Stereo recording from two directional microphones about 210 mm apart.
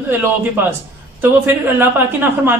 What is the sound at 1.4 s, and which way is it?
Speech, 10° right (ahead or behind).